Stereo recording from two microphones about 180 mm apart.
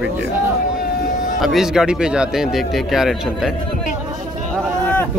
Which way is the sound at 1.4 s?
Centre (ahead or behind).